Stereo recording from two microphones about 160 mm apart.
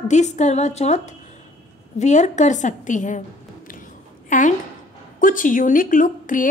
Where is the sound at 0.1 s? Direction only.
45° left (ahead or behind).